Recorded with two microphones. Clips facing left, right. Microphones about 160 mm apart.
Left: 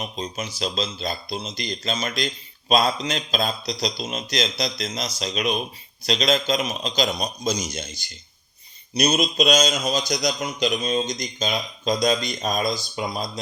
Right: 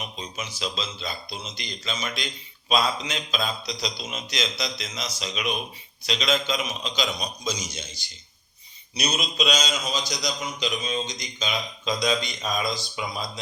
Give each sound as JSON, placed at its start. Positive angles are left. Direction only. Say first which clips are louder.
{"t": 0.0, "sound": "speech", "louder": "left 5 dB", "side_deg": 40}
{"t": 9.0, "sound": "a man's voice", "louder": "left 7 dB", "side_deg": 40}